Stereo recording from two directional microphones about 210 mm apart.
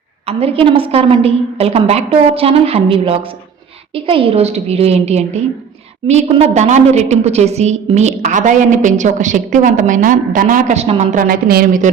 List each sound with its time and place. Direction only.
0.3 s a woman's voice: 30° right (ahead or behind)